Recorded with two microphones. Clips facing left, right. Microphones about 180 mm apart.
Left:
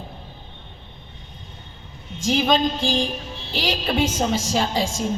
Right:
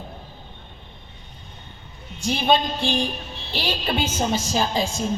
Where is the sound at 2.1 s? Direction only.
90° left.